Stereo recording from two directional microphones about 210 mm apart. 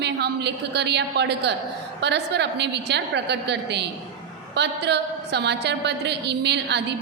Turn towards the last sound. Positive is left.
turn(degrees=-55)  # may be behind; listen again after turning